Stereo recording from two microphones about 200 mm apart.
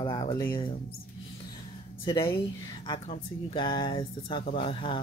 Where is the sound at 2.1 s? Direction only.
15° left (ahead or behind).